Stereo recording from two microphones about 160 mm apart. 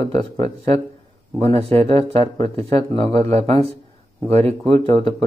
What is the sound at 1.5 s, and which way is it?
Speech, 35° right (ahead or behind).